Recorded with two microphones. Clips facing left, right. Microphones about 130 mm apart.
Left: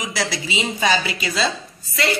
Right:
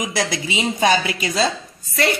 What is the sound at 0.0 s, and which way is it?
A woman's voice, 50° right (ahead or behind).